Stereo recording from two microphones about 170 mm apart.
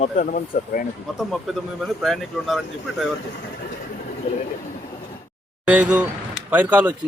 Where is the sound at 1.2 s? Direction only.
Centre (ahead or behind).